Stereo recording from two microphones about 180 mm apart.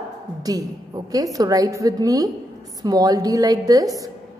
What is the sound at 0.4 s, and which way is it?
A woman's voice, 20° right (ahead or behind).